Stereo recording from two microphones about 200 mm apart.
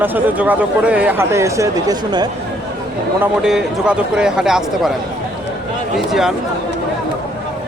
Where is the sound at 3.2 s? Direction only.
5° right (ahead or behind).